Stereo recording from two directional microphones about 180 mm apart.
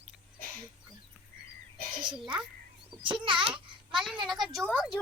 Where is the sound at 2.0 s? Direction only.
25° right (ahead or behind).